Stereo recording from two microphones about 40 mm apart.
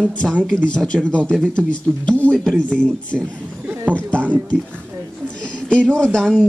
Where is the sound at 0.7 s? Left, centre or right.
Left.